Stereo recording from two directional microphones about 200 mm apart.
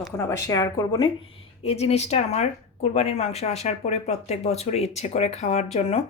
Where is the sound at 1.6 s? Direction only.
30° left (ahead or behind).